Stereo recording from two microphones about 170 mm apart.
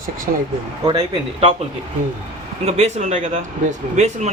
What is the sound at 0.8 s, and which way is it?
Speech, 25° right (ahead or behind).